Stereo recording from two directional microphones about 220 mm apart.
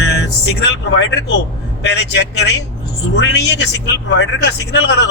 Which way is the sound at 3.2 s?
50° left (ahead or behind).